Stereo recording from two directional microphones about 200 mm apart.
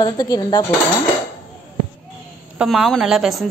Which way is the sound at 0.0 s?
20° left (ahead or behind).